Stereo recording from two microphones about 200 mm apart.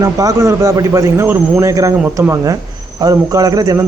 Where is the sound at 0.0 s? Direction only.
15° right (ahead or behind).